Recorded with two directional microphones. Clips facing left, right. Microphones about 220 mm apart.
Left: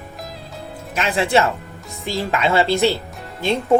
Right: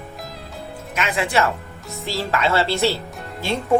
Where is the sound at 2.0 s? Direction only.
15° left (ahead or behind).